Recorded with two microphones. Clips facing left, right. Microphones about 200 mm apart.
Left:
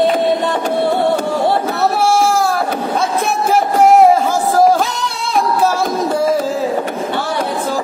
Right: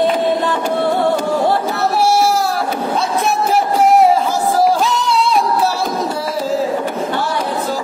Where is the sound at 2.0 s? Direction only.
50° left (ahead or behind).